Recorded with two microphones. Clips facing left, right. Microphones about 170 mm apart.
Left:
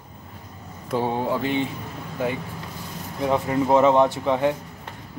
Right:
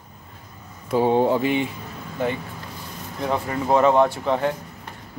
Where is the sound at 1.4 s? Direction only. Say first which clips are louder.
Right 2 dB; 10° right (ahead or behind).